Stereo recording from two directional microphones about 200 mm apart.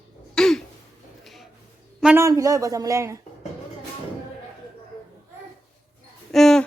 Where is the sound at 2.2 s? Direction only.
15° right (ahead or behind).